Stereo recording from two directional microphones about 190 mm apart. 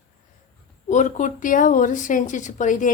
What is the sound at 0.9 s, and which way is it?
Speech, 40° left (ahead or behind).